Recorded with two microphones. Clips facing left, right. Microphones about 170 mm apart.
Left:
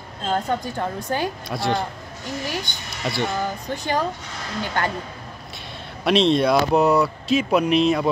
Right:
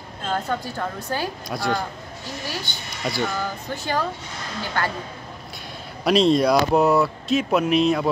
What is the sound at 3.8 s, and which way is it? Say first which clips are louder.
Speech: left 1 dB; 15° left (ahead or behind).